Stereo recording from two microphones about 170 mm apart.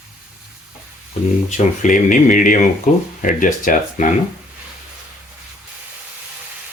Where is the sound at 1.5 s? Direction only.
45° left (ahead or behind).